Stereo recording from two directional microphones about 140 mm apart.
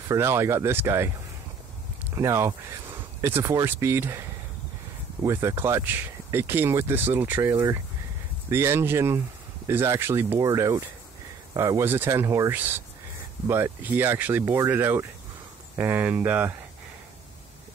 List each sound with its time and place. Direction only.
0.1 s speech: 20° right (ahead or behind)
2.1 s speech: 20° right (ahead or behind)